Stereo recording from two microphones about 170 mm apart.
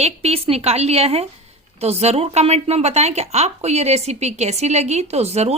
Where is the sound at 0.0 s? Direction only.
40° right (ahead or behind).